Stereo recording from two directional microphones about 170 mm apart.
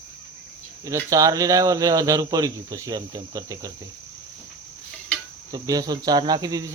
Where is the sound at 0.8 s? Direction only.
20° right (ahead or behind).